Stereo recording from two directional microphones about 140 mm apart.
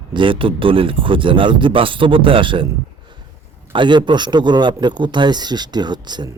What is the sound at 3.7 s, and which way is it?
Speech, 35° right (ahead or behind).